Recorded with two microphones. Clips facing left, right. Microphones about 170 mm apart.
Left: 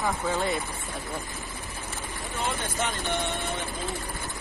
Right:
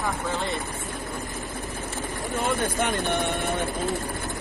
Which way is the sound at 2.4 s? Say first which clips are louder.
Right 5 dB; 55° right (ahead or behind).